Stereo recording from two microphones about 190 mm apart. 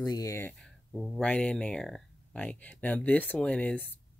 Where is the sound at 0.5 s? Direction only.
Centre (ahead or behind).